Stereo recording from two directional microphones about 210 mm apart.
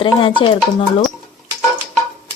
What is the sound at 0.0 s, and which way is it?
Speech, 25° left (ahead or behind).